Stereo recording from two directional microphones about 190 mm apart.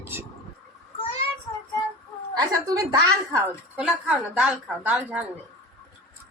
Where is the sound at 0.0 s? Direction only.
10° right (ahead or behind).